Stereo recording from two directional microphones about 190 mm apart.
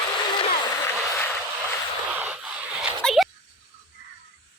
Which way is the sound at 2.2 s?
5° right (ahead or behind).